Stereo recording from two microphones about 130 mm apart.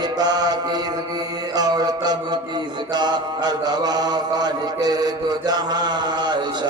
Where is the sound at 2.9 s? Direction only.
35° right (ahead or behind).